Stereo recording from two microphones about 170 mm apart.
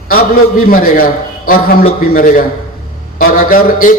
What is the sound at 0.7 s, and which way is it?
Speech, 55° left (ahead or behind).